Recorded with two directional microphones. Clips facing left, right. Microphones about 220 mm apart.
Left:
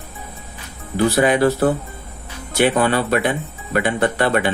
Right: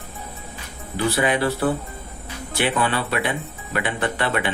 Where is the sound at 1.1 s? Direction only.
45° left (ahead or behind).